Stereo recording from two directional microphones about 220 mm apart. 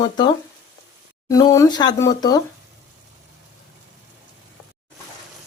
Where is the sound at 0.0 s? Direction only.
20° left (ahead or behind).